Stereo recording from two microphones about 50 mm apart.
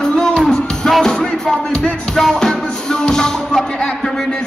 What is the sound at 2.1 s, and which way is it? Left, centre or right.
Music, centre.